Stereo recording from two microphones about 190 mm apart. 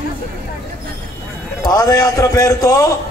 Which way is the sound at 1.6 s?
20° left (ahead or behind).